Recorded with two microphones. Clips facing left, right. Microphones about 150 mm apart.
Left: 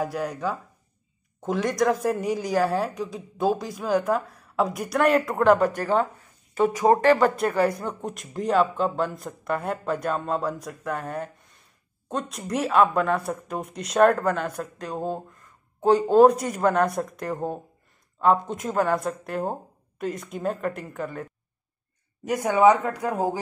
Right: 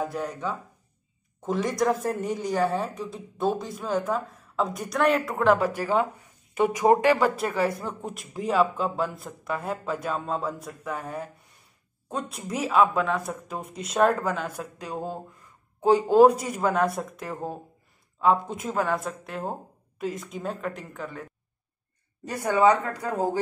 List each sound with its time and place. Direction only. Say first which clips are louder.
0.0 s a woman's voice: left 2 dB; centre (ahead or behind)
22.2 s a woman's voice: left 3 dB; 15° left (ahead or behind)